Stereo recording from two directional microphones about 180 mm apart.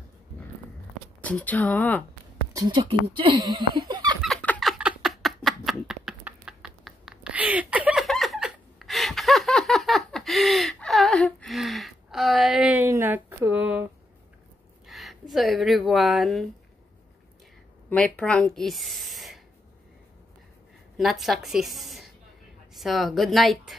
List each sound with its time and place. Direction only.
1.2 s speech: 10° left (ahead or behind)
2.5 s speech: 25° right (ahead or behind)
4.2 s a sound: 5° left (ahead or behind)
14.9 s a sound: centre (ahead or behind)
17.8 s speech: 5° left (ahead or behind)
21.0 s a woman's voice: centre (ahead or behind)